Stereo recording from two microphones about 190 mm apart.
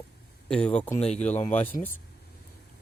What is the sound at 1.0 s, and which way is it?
Speech, 35° left (ahead or behind).